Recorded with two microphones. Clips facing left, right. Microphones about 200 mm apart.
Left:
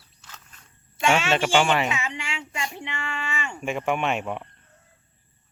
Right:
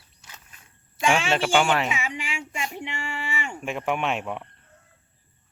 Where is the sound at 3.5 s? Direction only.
Centre (ahead or behind).